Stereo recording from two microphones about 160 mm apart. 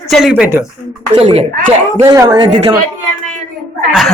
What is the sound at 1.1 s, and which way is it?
Speech, 40° right (ahead or behind).